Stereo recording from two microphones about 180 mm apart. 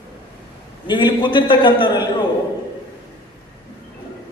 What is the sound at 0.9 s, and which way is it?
A man's voice, 25° left (ahead or behind).